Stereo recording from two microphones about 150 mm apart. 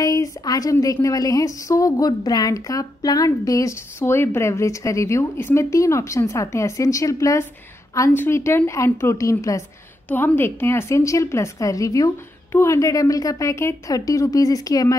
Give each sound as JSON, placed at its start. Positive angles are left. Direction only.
{"t": 0.0, "sound": "a woman's voice", "side_deg": 25}